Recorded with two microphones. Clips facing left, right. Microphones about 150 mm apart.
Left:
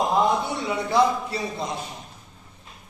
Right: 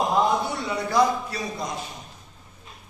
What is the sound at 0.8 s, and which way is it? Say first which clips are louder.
Speech: even; 30° left (ahead or behind).